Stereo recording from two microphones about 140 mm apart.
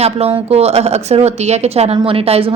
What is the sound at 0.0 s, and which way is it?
Speech, 45° right (ahead or behind).